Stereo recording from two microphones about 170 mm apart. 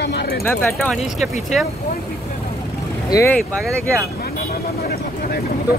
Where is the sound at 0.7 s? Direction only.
Centre (ahead or behind).